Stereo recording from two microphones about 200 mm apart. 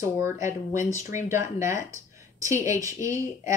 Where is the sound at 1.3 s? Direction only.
15° right (ahead or behind).